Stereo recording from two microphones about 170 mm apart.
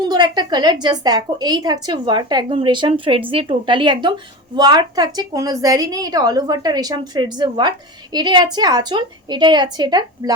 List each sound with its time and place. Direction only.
0.0 s a woman's voice: 25° right (ahead or behind)